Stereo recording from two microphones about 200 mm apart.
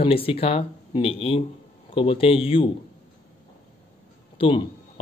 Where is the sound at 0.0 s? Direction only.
30° left (ahead or behind).